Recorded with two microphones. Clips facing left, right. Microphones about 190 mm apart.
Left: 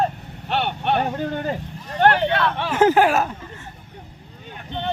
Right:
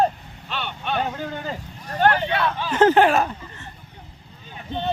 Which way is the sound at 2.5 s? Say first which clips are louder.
Left 2 dB; 65° left (ahead or behind).